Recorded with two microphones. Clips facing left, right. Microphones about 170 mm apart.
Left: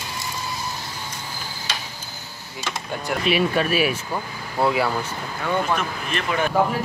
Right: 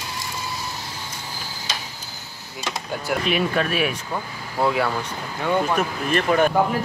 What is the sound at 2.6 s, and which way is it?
Speech, 5° right (ahead or behind).